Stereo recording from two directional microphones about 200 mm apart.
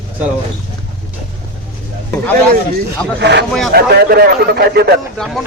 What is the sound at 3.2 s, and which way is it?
A man's voice, 60° right (ahead or behind).